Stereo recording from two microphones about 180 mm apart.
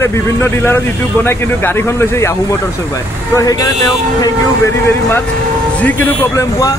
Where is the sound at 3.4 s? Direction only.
20° left (ahead or behind).